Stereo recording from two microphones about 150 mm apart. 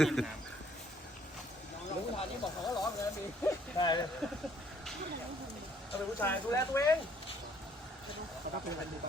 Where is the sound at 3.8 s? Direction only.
30° left (ahead or behind).